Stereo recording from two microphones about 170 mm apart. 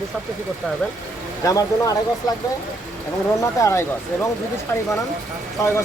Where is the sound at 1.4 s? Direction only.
20° left (ahead or behind).